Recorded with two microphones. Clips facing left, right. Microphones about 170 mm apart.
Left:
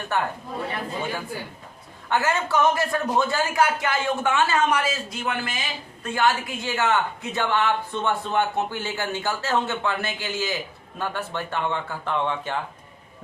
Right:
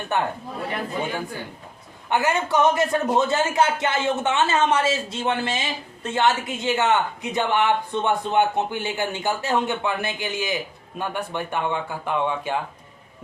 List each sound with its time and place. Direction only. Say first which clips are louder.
0.1 s speech: right 2 dB; 20° right (ahead or behind)
2.0 s a man's voice: right 1 dB; 15° right (ahead or behind)